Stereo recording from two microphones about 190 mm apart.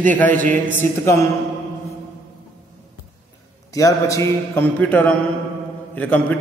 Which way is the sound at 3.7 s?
15° left (ahead or behind).